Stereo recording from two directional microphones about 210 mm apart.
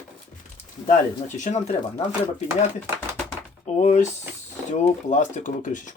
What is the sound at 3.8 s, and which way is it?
Speech, 35° left (ahead or behind).